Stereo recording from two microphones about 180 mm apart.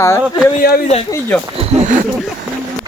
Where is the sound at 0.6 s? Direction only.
55° left (ahead or behind).